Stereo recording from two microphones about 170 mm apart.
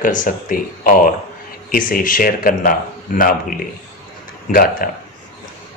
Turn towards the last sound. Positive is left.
turn(degrees=60)  # may be behind; listen again after turning